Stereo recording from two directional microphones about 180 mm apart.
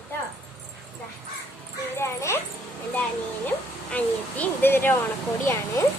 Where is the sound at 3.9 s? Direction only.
10° left (ahead or behind).